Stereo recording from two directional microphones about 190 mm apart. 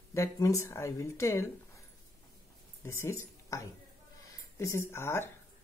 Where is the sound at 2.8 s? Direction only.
15° left (ahead or behind).